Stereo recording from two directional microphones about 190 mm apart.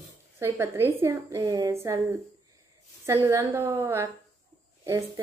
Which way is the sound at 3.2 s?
15° right (ahead or behind).